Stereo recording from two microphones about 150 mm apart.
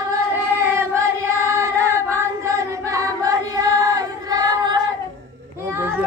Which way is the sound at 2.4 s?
20° right (ahead or behind).